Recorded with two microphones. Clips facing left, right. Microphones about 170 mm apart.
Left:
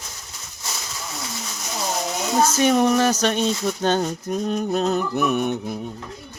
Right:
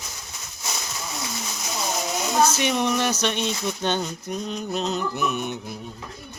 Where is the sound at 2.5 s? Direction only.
45° left (ahead or behind).